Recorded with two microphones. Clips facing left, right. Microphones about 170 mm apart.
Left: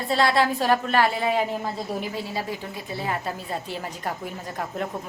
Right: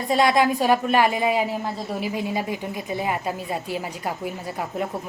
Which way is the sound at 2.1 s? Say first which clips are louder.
Right 4 dB; 15° right (ahead or behind).